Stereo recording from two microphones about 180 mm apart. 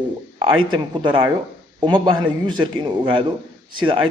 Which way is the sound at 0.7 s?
25° right (ahead or behind).